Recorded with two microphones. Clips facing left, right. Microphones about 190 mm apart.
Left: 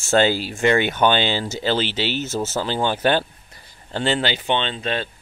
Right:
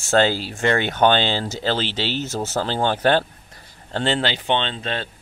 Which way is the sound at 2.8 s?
15° left (ahead or behind).